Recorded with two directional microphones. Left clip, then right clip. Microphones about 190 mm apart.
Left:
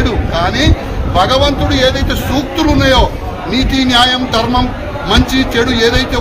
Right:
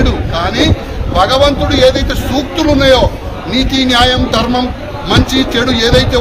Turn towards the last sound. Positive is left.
turn(degrees=-15)  # may be behind; listen again after turning